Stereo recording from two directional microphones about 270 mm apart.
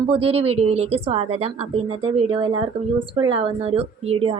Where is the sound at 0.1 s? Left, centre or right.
Right.